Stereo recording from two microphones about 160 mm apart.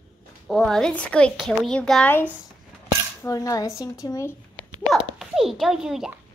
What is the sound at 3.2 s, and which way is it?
Speech, 20° left (ahead or behind).